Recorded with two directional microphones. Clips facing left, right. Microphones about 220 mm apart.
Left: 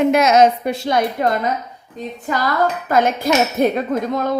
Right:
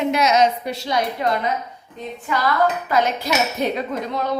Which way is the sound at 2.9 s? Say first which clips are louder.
Left 4 dB; 50° left (ahead or behind).